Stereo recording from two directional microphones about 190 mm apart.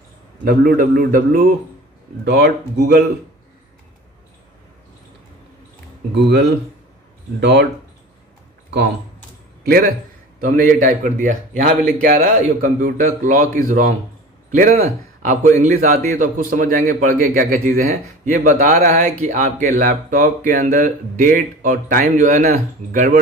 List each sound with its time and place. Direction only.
0.5 s a man's voice: 50° right (ahead or behind)
2.2 s speech: 60° right (ahead or behind)
6.1 s speech: 65° right (ahead or behind)
8.7 s speech: 65° right (ahead or behind)
9.6 s a man's voice: 50° right (ahead or behind)
14.6 s a man's voice: 45° right (ahead or behind)